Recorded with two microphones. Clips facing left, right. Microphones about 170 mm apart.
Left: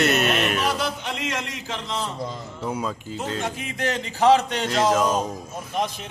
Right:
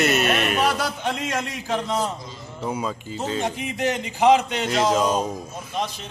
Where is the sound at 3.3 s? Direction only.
20° right (ahead or behind); by 5.0 s centre (ahead or behind).